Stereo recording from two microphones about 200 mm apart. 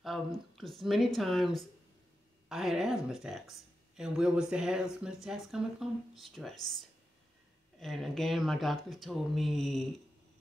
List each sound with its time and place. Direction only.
0.0 s speech: centre (ahead or behind)
7.8 s speech: centre (ahead or behind)